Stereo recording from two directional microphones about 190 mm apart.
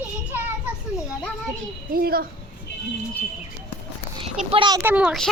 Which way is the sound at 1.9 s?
50° right (ahead or behind).